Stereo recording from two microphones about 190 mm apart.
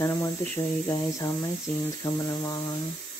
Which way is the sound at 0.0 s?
15° left (ahead or behind).